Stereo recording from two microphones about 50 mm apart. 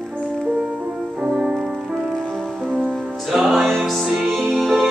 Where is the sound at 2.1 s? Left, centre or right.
Centre.